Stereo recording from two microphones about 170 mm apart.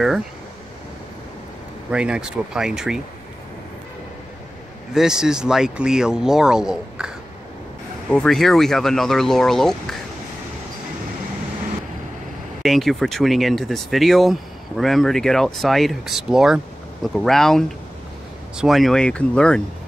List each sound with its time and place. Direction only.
1.9 s speech: 5° right (ahead or behind)
4.9 s speech: 5° right (ahead or behind)
8.1 s speech: 5° left (ahead or behind)
12.6 s speech: centre (ahead or behind)